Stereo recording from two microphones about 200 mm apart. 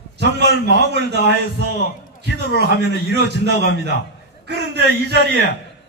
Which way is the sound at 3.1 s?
55° right (ahead or behind).